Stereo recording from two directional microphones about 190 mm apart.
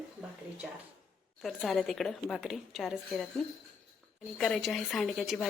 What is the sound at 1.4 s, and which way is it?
A woman's voice, centre (ahead or behind).